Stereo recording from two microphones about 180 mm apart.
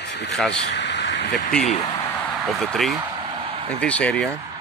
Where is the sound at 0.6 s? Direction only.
75° left (ahead or behind).